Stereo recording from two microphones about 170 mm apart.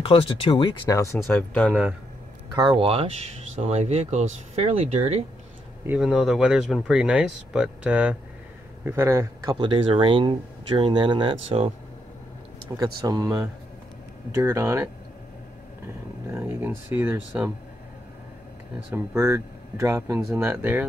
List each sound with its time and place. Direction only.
0.0 s speech: 35° left (ahead or behind)
0.9 s speech: 15° left (ahead or behind)
1.7 s speech: 5° right (ahead or behind)
2.5 s speech: 25° right (ahead or behind)
5.9 s speech: centre (ahead or behind); by 11.7 s 35° right (ahead or behind)
12.7 s speech: 20° right (ahead or behind)
16.3 s speech: 15° right (ahead or behind)
19.1 s speech: 20° right (ahead or behind)